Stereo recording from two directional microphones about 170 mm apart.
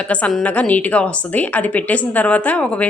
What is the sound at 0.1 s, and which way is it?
A woman's voice, 5° left (ahead or behind).